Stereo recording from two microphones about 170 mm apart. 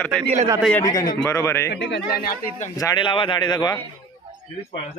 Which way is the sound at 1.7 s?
90° left.